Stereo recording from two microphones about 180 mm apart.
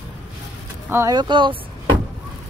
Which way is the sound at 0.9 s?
20° right (ahead or behind).